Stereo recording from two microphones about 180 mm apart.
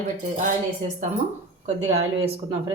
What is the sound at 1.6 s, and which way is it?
A woman's voice, 35° right (ahead or behind).